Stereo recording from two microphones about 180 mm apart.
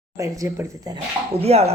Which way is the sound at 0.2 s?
20° right (ahead or behind).